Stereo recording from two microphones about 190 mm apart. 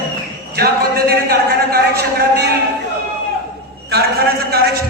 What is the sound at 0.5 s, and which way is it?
A man's voice, 55° right (ahead or behind).